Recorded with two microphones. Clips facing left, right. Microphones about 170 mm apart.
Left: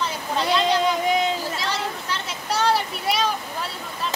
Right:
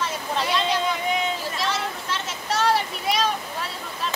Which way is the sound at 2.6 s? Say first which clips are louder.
Left 1 dB; centre (ahead or behind).